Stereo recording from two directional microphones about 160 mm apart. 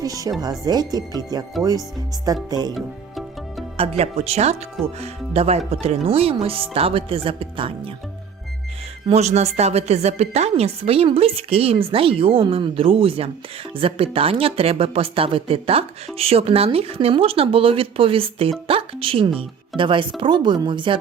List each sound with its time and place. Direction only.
0.0 s speech: 20° right (ahead or behind)
3.8 s a woman's voice: 40° right (ahead or behind)
9.0 s a woman's voice: 45° right (ahead or behind)